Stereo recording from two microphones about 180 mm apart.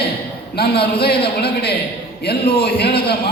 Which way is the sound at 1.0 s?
65° left (ahead or behind).